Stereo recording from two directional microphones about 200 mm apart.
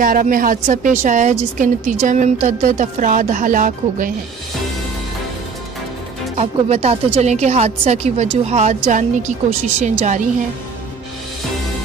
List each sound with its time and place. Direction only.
0.0 s a woman's voice: 45° right (ahead or behind)
6.3 s a woman's voice: 35° right (ahead or behind)